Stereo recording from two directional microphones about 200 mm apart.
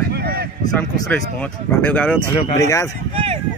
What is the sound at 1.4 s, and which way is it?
Speech, 10° left (ahead or behind).